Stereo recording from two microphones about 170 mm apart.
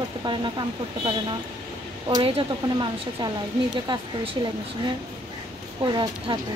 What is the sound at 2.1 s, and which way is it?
Speech, 30° right (ahead or behind).